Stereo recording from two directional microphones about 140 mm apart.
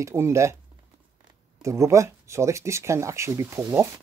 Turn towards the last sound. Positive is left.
turn(degrees=-20)  # may be behind; listen again after turning